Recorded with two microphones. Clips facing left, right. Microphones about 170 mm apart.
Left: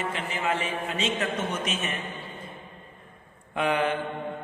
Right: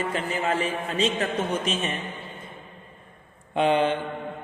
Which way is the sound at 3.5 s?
25° right (ahead or behind).